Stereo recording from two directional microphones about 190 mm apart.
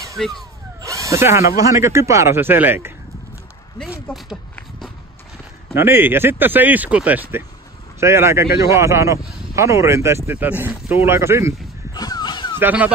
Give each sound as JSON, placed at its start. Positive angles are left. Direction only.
{"t": 0.2, "sound": "speech", "side_deg": 0}
{"t": 0.7, "sound": "drill", "side_deg": -15}
{"t": 1.6, "sound": "speech", "side_deg": -15}
{"t": 3.7, "sound": "speech", "side_deg": 0}
{"t": 5.8, "sound": "speech", "side_deg": -10}
{"t": 11.9, "sound": "a sound", "side_deg": 20}
{"t": 12.5, "sound": "speech", "side_deg": -10}